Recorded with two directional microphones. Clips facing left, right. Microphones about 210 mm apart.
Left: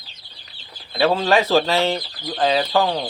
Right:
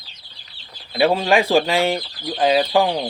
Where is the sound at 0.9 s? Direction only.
15° right (ahead or behind).